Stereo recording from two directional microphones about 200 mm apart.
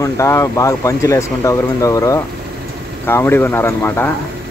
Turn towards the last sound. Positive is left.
turn(degrees=10)  # may be behind; listen again after turning